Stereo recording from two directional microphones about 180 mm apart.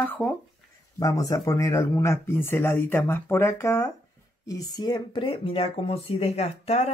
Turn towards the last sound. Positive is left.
turn(degrees=35)  # may be behind; listen again after turning